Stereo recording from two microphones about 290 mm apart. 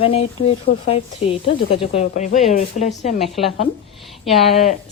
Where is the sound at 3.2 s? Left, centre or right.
Centre.